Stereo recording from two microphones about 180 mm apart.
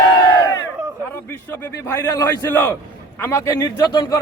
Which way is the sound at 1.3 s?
15° left (ahead or behind).